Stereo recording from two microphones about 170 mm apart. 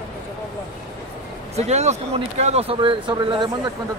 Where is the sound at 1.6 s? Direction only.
40° right (ahead or behind).